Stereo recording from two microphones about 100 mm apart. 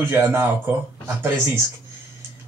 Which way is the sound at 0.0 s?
20° right (ahead or behind).